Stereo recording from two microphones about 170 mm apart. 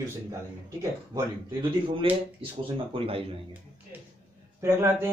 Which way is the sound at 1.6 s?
30° right (ahead or behind).